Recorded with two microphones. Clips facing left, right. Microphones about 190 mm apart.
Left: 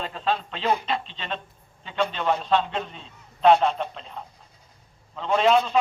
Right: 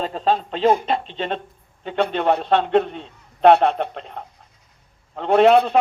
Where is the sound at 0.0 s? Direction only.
40° right (ahead or behind).